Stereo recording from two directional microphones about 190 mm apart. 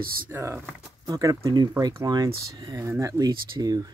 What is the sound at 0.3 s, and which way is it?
Speech, 15° right (ahead or behind).